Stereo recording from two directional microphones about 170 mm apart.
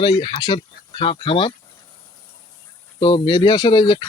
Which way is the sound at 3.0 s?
30° left (ahead or behind).